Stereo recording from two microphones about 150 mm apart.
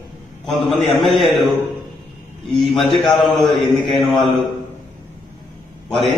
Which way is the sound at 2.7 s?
Centre (ahead or behind).